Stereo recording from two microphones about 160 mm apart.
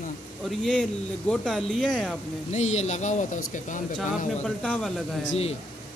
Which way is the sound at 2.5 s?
45° left (ahead or behind).